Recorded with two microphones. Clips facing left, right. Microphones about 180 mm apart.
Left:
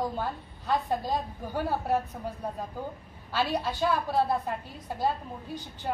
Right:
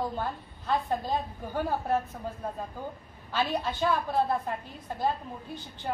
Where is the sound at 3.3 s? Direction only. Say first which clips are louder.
Left 1 dB; 10° left (ahead or behind).